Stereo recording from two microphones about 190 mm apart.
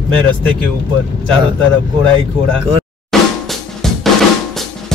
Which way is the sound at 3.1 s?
Centre (ahead or behind).